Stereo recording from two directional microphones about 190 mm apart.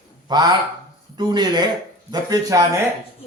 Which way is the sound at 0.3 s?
20° right (ahead or behind).